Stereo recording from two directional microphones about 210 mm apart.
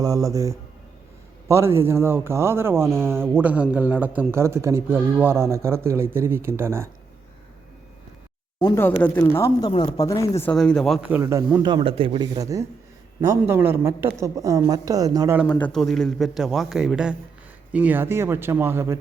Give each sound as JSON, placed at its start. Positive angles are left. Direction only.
{"t": 0.0, "sound": "a man's voice", "side_deg": -15}
{"t": 8.6, "sound": "speech", "side_deg": 10}
{"t": 9.6, "sound": "speech", "side_deg": 20}
{"t": 10.4, "sound": "a man's voice", "side_deg": 5}
{"t": 15.6, "sound": "a man's voice", "side_deg": 0}